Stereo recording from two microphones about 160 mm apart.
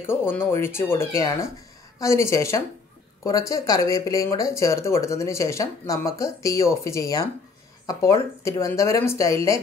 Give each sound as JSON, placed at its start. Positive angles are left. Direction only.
{"t": 0.0, "sound": "speech", "side_deg": 15}